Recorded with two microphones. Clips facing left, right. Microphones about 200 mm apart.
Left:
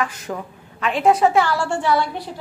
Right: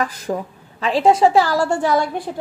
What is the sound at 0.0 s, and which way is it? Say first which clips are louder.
A woman's voice: right 3 dB; 35° right (ahead or behind).